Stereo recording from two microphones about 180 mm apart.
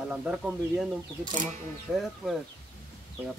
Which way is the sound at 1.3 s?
45° right (ahead or behind).